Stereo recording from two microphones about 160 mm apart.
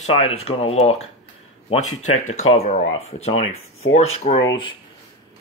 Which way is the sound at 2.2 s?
45° left (ahead or behind).